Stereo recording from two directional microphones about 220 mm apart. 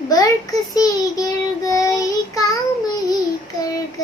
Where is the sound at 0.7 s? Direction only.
15° left (ahead or behind).